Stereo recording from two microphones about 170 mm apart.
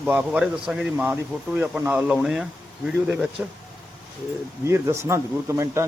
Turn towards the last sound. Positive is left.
turn(degrees=-15)  # may be behind; listen again after turning